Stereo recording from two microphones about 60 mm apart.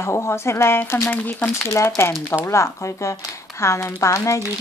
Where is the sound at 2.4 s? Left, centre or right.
Left.